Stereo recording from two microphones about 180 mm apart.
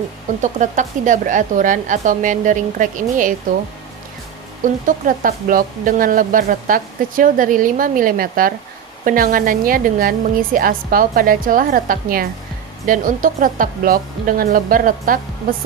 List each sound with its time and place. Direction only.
0.4 s speech: 45° right (ahead or behind)
4.6 s speech: 45° right (ahead or behind)